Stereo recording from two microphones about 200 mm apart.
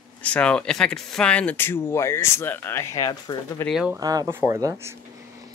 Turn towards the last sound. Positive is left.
turn(degrees=-15)  # may be behind; listen again after turning